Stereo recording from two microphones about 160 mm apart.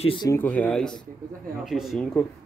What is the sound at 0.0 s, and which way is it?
Speech, 35° left (ahead or behind).